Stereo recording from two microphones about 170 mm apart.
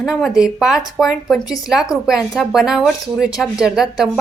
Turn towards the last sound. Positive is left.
turn(degrees=0)  # may be behind; listen again after turning